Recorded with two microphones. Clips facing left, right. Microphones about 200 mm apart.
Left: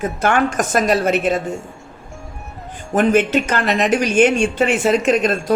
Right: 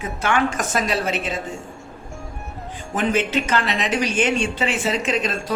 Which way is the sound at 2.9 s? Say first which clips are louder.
Left 6 dB; 55° left (ahead or behind).